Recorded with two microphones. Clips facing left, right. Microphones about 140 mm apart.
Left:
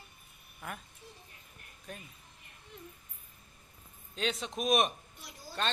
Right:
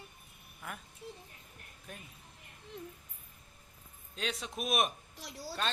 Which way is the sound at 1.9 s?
5° right (ahead or behind).